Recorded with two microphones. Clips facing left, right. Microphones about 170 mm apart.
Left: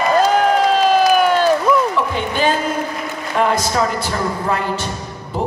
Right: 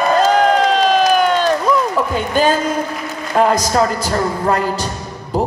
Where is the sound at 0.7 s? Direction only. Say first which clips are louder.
Even; 10° left (ahead or behind).